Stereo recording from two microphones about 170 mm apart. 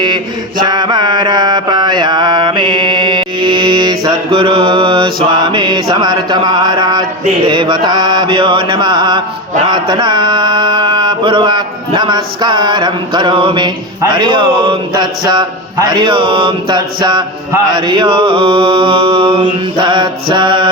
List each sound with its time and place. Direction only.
0.6 s mantra: 25° right (ahead or behind)
7.4 s a man's voice: 30° right (ahead or behind)
9.6 s mantra: 25° right (ahead or behind)
14.0 s a man's voice: 25° right (ahead or behind)